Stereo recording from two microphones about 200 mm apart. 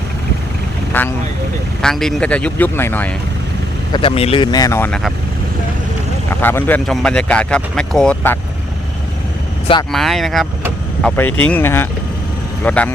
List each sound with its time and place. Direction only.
0.9 s speech: 10° left (ahead or behind)
3.9 s speech: 30° left (ahead or behind); by 4.9 s 10° left (ahead or behind)
6.4 s speech: 10° left (ahead or behind)
9.9 s speech: centre (ahead or behind)